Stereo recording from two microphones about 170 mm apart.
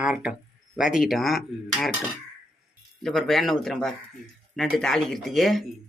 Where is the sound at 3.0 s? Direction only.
Centre (ahead or behind).